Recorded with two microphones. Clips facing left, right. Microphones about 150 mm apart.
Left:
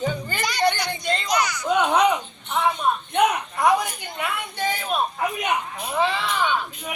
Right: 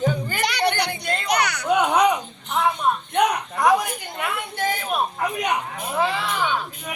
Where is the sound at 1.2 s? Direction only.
65° right (ahead or behind).